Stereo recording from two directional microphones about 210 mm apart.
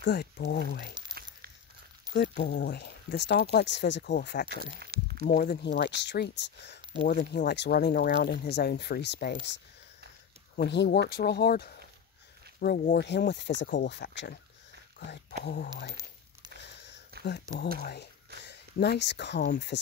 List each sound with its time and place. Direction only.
0.0 s speech: 55° left (ahead or behind)
2.1 s speech: 55° left (ahead or behind)
4.7 s a sound: 50° right (ahead or behind)
5.3 s speech: 50° left (ahead or behind)
15.4 s speech: 45° left (ahead or behind)
16.6 s a sound: 55° left (ahead or behind)
17.2 s speech: 50° left (ahead or behind)